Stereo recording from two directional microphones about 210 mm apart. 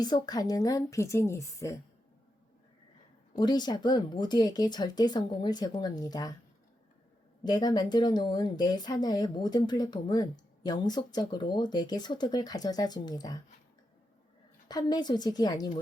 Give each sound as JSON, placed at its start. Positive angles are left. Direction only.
{"t": 0.0, "sound": "speech", "side_deg": 20}
{"t": 3.3, "sound": "speech", "side_deg": 20}
{"t": 7.4, "sound": "speech", "side_deg": 20}
{"t": 14.7, "sound": "speech", "side_deg": 20}